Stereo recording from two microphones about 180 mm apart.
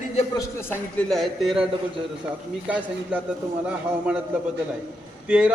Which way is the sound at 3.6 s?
5° right (ahead or behind).